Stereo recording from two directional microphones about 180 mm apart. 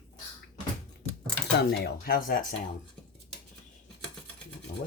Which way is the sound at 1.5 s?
65° left (ahead or behind).